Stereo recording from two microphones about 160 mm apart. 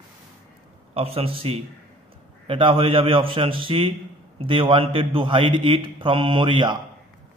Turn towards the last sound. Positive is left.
turn(degrees=-30)  # may be behind; listen again after turning